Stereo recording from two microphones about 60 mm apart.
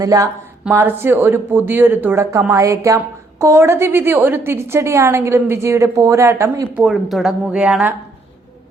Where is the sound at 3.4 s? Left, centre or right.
Right.